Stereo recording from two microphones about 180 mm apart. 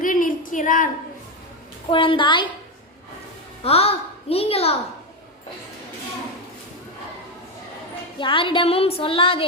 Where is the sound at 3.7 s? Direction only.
35° left (ahead or behind).